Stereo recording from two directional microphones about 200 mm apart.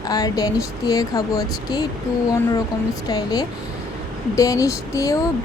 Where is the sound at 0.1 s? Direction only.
20° left (ahead or behind).